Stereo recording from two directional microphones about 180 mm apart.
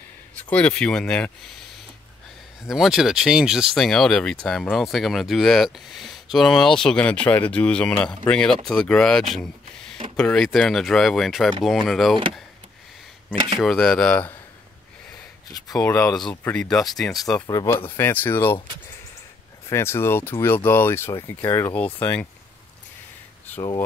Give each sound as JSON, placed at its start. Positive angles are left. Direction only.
{"t": 0.4, "sound": "speech", "side_deg": 5}
{"t": 2.6, "sound": "speech", "side_deg": 0}
{"t": 13.6, "sound": "speech", "side_deg": 0}
{"t": 15.8, "sound": "speech", "side_deg": 15}
{"t": 16.3, "sound": "speech", "side_deg": 5}
{"t": 17.5, "sound": "speech", "side_deg": 20}
{"t": 19.7, "sound": "speech", "side_deg": 15}
{"t": 23.4, "sound": "a sound", "side_deg": 10}